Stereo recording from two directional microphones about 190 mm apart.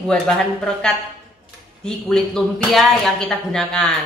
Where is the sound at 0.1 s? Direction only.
5° left (ahead or behind).